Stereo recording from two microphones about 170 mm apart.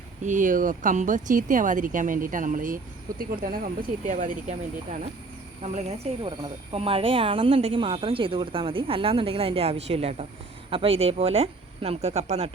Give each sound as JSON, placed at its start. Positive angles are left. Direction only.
{"t": 0.3, "sound": "speech", "side_deg": -50}
{"t": 5.6, "sound": "speech", "side_deg": -40}
{"t": 6.2, "sound": "speech", "side_deg": -30}